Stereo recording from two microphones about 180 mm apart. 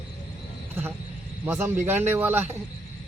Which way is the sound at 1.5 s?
15° right (ahead or behind).